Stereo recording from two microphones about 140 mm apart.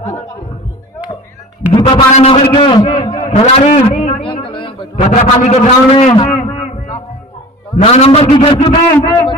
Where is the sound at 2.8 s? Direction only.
55° left (ahead or behind).